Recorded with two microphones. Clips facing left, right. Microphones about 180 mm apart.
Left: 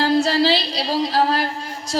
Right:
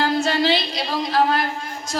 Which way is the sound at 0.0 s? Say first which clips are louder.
Left 3 dB; 35° left (ahead or behind).